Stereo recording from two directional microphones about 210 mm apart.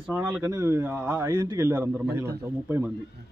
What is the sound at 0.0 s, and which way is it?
Speech, centre (ahead or behind).